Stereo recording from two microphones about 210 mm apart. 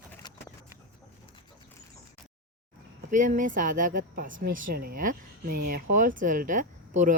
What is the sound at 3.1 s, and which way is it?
Speech, 35° right (ahead or behind).